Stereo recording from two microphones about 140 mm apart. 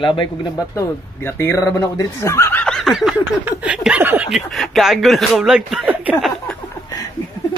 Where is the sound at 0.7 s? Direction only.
15° left (ahead or behind).